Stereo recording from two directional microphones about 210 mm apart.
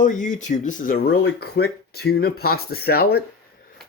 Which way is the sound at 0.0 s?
35° left (ahead or behind).